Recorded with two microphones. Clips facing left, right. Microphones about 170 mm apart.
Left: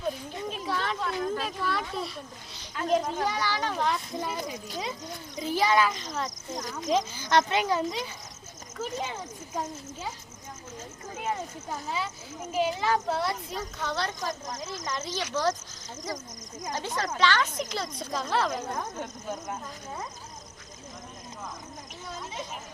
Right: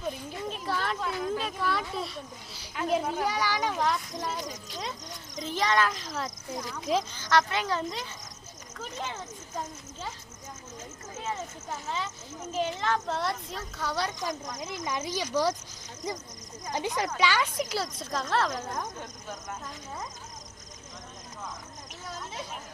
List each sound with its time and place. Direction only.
0.5 s children playing: centre (ahead or behind)
1.2 s a child's voice: centre (ahead or behind)
3.8 s a child's voice: 5° left (ahead or behind)
7.1 s speech: 15° left (ahead or behind)
11.1 s speech: 15° left (ahead or behind)
13.8 s a child's voice: 10° right (ahead or behind)